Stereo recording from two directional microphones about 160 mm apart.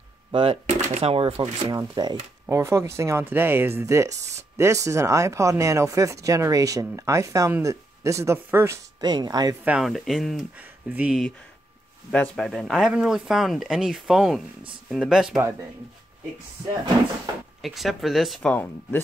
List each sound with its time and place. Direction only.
0.3 s speech: 35° right (ahead or behind); by 8.7 s 15° right (ahead or behind)
9.0 s speech: 25° right (ahead or behind)
9.7 s speech: centre (ahead or behind)
12.1 s speech: 5° left (ahead or behind)
17.6 s speech: centre (ahead or behind)